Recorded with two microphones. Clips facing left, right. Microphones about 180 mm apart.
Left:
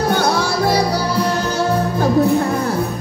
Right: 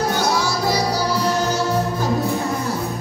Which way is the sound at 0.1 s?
60° left (ahead or behind).